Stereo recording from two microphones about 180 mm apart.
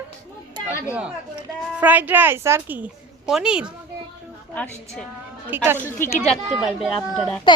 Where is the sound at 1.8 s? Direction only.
10° right (ahead or behind).